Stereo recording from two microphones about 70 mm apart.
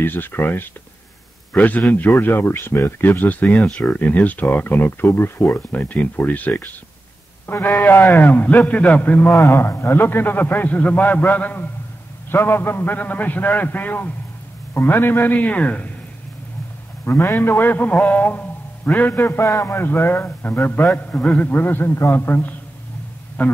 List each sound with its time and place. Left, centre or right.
0.0 s a man's voice: left
9.5 s speech: left; by 15.9 s centre
17.0 s speech: left